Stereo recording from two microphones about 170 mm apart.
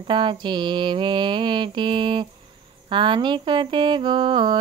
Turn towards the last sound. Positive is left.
turn(degrees=-30)  # may be behind; listen again after turning